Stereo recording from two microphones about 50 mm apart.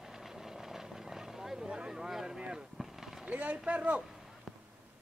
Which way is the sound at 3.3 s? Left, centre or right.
Right.